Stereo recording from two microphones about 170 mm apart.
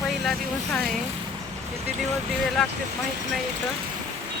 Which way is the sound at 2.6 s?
5° left (ahead or behind).